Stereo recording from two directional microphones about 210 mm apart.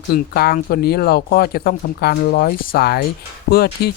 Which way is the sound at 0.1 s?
45° left (ahead or behind).